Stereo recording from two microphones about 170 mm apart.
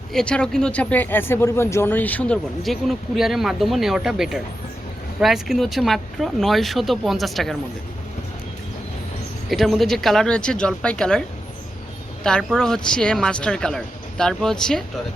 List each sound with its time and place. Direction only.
0.1 s speech: 5° left (ahead or behind)
9.5 s speech: centre (ahead or behind)
12.2 s speech: 5° left (ahead or behind)